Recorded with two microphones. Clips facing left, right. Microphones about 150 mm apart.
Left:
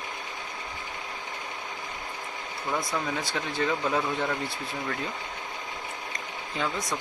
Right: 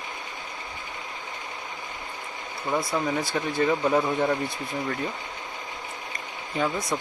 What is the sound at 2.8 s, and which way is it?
Speech, 10° right (ahead or behind).